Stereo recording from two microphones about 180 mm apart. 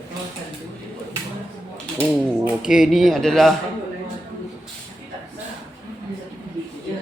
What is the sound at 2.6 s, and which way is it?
Speech, 5° right (ahead or behind).